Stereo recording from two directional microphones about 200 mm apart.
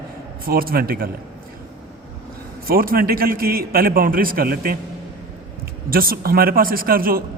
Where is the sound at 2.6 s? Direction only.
45° right (ahead or behind).